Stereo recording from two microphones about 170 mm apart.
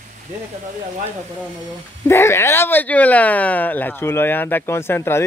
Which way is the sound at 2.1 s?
15° left (ahead or behind).